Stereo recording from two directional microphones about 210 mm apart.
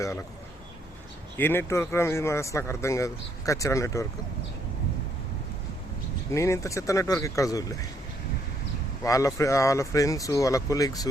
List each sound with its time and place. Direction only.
0.0 s speech: 15° left (ahead or behind)
1.4 s speech: 10° left (ahead or behind)
6.3 s speech: 15° left (ahead or behind)
9.0 s speech: 15° left (ahead or behind)